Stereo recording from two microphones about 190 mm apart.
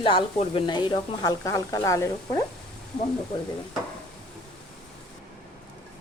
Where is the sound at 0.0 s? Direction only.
25° left (ahead or behind).